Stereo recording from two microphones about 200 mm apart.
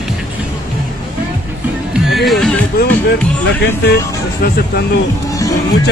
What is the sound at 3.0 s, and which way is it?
Speech, 55° left (ahead or behind).